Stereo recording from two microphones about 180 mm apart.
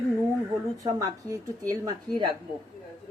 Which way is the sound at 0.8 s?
20° right (ahead or behind).